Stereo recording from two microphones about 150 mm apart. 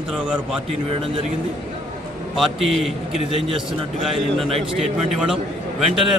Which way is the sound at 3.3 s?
35° right (ahead or behind).